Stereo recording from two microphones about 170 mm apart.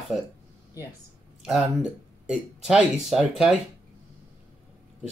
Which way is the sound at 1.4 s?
5° right (ahead or behind).